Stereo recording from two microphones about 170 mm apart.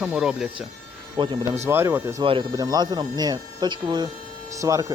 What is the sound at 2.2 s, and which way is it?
Speech, 30° right (ahead or behind).